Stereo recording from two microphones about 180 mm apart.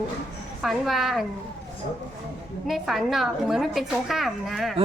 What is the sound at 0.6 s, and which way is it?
Speech, centre (ahead or behind).